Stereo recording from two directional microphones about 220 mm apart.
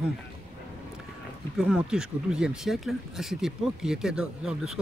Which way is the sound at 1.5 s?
5° right (ahead or behind).